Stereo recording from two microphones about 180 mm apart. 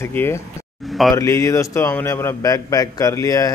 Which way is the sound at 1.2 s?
15° left (ahead or behind).